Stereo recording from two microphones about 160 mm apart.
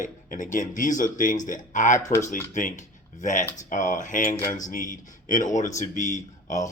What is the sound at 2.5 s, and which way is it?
Speech, 55° left (ahead or behind).